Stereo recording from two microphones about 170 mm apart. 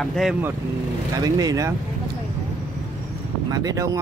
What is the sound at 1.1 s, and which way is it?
Speech, 20° right (ahead or behind).